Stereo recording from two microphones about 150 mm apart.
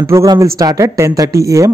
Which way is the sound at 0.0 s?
20° right (ahead or behind).